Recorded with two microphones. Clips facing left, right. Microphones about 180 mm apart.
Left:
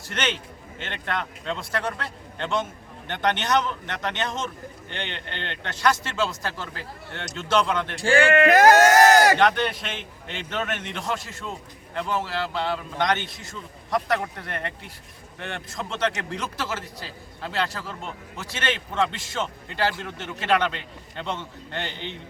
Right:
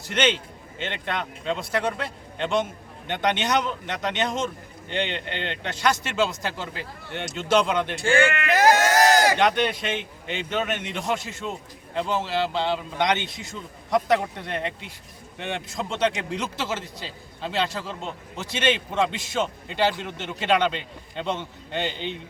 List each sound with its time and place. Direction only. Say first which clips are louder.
0.1 s a man's voice: right 5 dB; 20° right (ahead or behind)
8.0 s speech: left 1 dB; 35° left (ahead or behind)
8.4 s speech: left 5 dB; 50° left (ahead or behind)
9.4 s a man's voice: even; 15° right (ahead or behind)